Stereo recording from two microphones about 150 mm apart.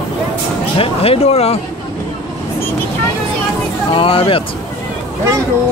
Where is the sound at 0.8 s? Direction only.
40° left (ahead or behind).